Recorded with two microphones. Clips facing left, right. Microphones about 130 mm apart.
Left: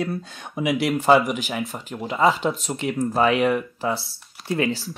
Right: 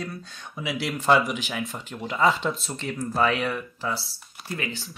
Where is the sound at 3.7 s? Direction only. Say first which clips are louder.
Left 5 dB; 55° left (ahead or behind).